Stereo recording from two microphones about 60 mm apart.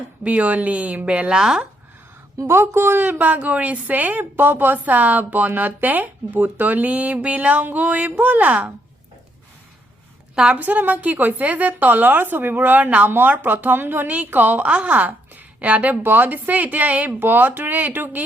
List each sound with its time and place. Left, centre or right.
0.3 s a woman's voice: right
1.4 s speech: centre
2.5 s a woman's voice: right
10.3 s a woman's voice: right